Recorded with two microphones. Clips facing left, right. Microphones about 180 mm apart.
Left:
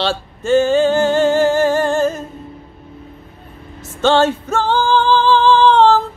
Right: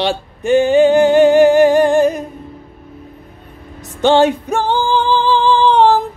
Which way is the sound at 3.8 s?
15° right (ahead or behind).